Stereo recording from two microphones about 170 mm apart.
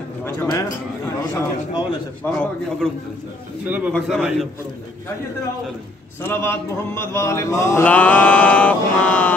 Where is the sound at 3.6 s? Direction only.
10° right (ahead or behind).